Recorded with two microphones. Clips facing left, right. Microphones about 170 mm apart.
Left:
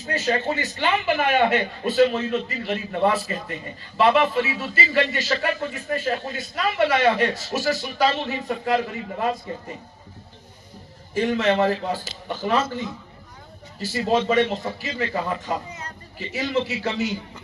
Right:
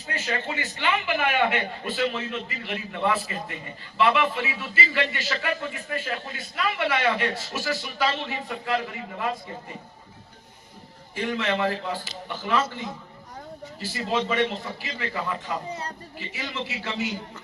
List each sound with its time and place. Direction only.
0.1 s a man's voice: 40° left (ahead or behind)
11.1 s a man's voice: 40° left (ahead or behind)